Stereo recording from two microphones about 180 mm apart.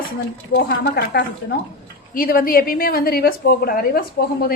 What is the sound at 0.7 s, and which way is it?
A woman's voice, 60° left (ahead or behind).